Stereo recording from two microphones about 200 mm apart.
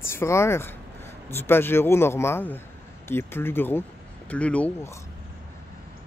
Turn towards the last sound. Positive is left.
turn(degrees=10)  # may be behind; listen again after turning